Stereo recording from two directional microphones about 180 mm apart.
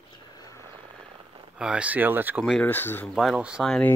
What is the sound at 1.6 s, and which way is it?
Speech, 5° right (ahead or behind).